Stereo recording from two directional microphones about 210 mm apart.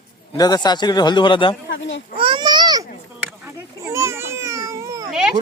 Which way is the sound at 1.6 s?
60° left (ahead or behind).